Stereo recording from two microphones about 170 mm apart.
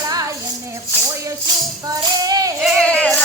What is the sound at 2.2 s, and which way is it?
Music, 20° right (ahead or behind).